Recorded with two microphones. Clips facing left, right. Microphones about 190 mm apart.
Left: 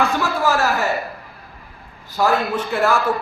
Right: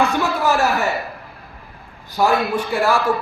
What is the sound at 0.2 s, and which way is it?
Speech, 15° right (ahead or behind).